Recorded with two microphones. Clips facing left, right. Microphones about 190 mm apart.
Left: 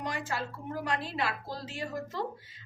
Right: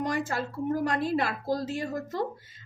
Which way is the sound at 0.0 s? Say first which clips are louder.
Right 6 dB; 45° right (ahead or behind).